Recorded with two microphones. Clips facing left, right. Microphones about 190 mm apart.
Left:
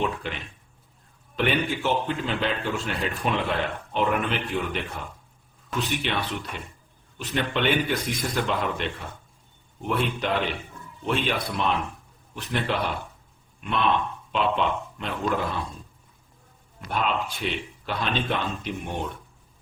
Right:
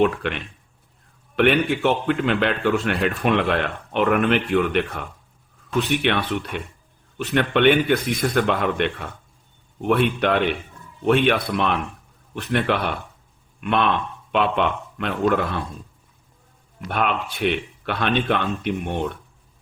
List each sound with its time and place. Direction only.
0.0 s a man's voice: 65° right (ahead or behind)
16.9 s a man's voice: 65° right (ahead or behind)